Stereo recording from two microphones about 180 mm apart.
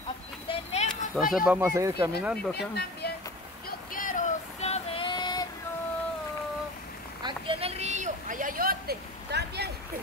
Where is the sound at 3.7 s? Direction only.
50° left (ahead or behind); by 5.4 s 25° left (ahead or behind).